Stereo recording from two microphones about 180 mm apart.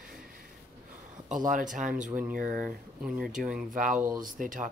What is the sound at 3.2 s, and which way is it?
Speech, 45° right (ahead or behind).